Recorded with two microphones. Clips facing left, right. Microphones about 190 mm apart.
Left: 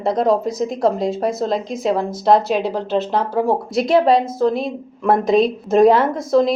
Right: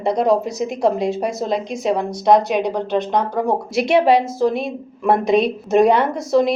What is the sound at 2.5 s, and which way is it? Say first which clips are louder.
Speech: right 1 dB; 15° right (ahead or behind).